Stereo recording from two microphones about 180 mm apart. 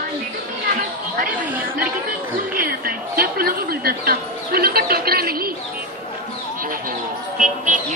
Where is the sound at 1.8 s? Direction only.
50° right (ahead or behind).